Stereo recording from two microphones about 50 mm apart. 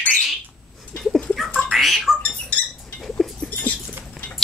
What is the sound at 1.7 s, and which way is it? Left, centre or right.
Squawk, centre.